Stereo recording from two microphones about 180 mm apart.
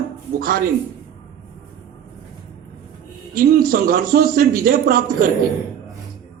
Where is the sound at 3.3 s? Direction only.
55° right (ahead or behind).